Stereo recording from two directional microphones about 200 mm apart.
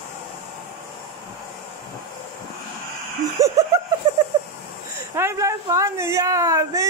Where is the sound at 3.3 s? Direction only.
15° right (ahead or behind).